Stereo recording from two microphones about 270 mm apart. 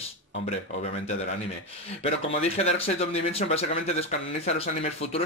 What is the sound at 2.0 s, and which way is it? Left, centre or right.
A man's voice, left.